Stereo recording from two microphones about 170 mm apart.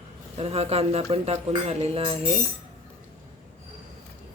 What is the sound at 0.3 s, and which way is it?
Speech, 35° right (ahead or behind).